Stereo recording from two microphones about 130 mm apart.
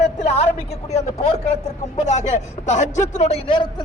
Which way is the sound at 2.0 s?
65° left (ahead or behind).